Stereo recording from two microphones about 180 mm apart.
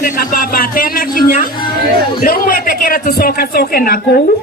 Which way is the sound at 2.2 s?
50° left (ahead or behind).